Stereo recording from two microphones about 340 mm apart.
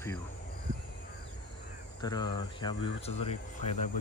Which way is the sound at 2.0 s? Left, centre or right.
Centre.